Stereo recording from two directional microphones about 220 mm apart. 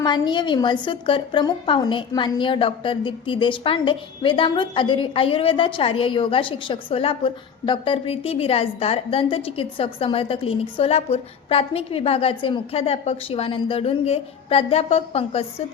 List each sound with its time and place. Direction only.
0.0 s a woman's voice: 20° left (ahead or behind)